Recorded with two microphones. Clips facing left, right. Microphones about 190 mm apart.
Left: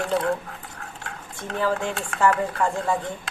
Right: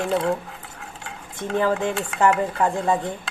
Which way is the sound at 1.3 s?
20° right (ahead or behind).